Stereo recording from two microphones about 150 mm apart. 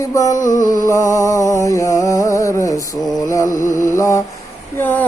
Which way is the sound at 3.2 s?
20° left (ahead or behind).